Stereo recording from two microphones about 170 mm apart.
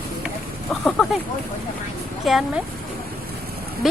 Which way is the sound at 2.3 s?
Centre (ahead or behind).